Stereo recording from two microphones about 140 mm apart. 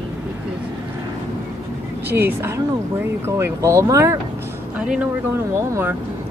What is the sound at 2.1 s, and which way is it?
Speech, 15° right (ahead or behind).